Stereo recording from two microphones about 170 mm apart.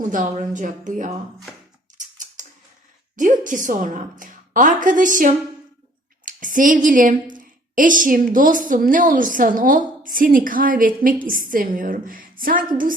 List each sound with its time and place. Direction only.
0.1 s a woman's voice: 45° right (ahead or behind)
2.0 s scissors: 50° right (ahead or behind)
3.2 s a woman's voice: 50° right (ahead or behind)